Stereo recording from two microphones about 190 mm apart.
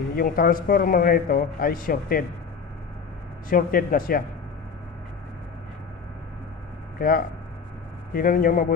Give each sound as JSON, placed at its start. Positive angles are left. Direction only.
{"t": 0.2, "sound": "a man's voice", "side_deg": 50}
{"t": 3.5, "sound": "a man's voice", "side_deg": 50}
{"t": 7.0, "sound": "a man's voice", "side_deg": 50}